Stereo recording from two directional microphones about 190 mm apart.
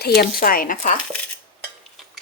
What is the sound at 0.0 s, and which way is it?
Speech, 55° left (ahead or behind).